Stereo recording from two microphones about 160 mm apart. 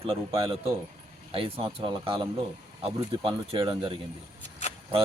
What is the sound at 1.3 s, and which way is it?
Speech, 35° right (ahead or behind).